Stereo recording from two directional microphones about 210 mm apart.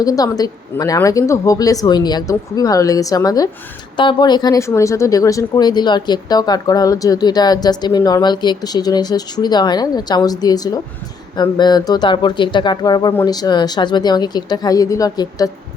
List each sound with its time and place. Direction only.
0.0 s speech: 15° left (ahead or behind)